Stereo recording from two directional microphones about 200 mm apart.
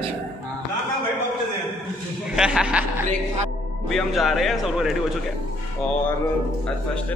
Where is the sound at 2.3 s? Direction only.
5° right (ahead or behind).